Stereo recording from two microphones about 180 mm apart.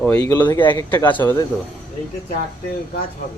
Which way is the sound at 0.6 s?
10° left (ahead or behind).